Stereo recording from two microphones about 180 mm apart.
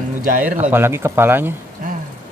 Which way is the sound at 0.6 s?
10° right (ahead or behind).